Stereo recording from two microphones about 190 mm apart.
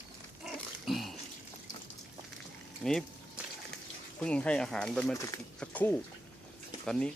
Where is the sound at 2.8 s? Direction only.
Centre (ahead or behind).